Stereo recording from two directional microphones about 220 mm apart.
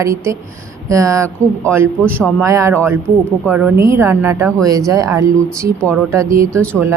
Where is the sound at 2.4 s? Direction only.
15° right (ahead or behind).